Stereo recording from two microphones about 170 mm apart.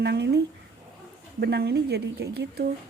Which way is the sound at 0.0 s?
75° right (ahead or behind).